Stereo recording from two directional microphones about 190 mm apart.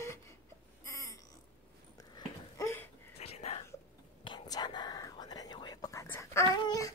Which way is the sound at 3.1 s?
30° left (ahead or behind).